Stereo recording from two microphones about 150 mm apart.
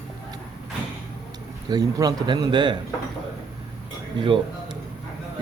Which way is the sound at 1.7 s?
25° right (ahead or behind).